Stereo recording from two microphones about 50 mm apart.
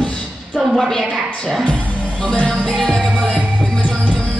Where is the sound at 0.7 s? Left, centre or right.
Centre.